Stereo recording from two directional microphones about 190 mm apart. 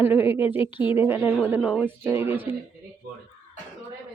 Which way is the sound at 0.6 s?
25° left (ahead or behind).